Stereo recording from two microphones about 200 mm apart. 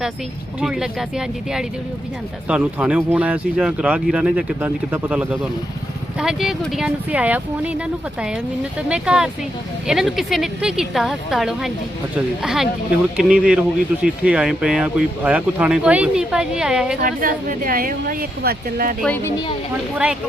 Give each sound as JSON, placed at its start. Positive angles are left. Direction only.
{"t": 0.6, "sound": "speech", "side_deg": 0}
{"t": 8.9, "sound": "speech", "side_deg": -5}
{"t": 17.0, "sound": "a woman's voice", "side_deg": -45}
{"t": 19.0, "sound": "speech", "side_deg": 10}